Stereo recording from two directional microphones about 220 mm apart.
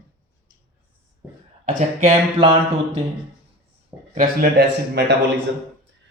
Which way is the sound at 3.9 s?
15° right (ahead or behind).